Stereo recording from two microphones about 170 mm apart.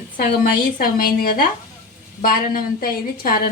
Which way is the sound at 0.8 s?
60° left (ahead or behind).